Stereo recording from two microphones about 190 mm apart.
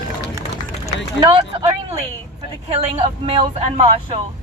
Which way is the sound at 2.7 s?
30° right (ahead or behind).